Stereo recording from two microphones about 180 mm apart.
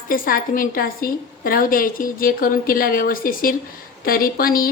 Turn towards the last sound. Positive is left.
turn(degrees=55)  # may be behind; listen again after turning